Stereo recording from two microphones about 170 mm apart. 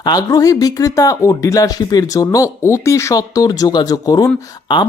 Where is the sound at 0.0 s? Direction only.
20° left (ahead or behind).